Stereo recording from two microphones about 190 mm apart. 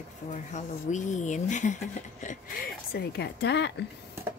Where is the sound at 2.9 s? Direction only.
60° left (ahead or behind).